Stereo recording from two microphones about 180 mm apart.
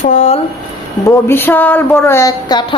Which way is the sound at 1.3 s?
10° left (ahead or behind).